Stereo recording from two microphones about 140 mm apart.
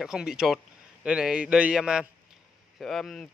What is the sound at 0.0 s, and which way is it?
A man's voice, 5° right (ahead or behind).